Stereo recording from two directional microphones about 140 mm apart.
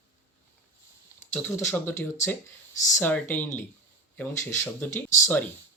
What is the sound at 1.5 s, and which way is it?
Speech, 15° left (ahead or behind).